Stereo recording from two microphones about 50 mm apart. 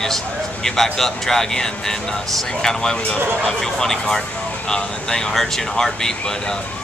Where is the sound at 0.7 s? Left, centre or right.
Centre.